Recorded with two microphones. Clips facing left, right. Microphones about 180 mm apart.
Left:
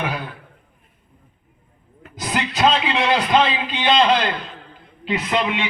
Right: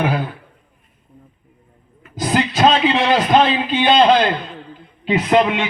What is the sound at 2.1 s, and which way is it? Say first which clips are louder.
A man's voice: right 6 dB; 35° right (ahead or behind).